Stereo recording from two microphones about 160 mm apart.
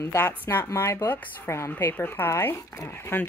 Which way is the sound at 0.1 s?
15° left (ahead or behind).